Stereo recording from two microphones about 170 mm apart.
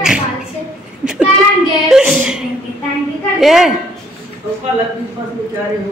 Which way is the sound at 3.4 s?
Centre (ahead or behind).